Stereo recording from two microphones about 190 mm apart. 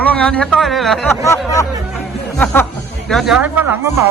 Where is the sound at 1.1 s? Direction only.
15° left (ahead or behind).